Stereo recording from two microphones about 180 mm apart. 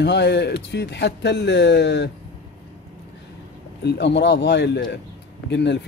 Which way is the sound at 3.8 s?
70° left (ahead or behind).